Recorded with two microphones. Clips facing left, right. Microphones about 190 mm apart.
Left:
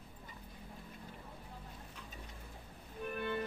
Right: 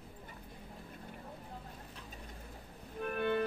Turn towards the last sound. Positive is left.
turn(degrees=-60)  # may be behind; listen again after turning